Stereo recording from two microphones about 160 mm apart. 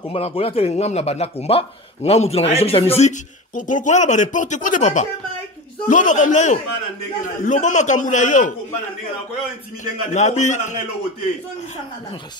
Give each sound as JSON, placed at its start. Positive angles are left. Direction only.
{"t": 0.1, "sound": "a man's voice", "side_deg": 35}
{"t": 10.1, "sound": "a man's voice", "side_deg": 45}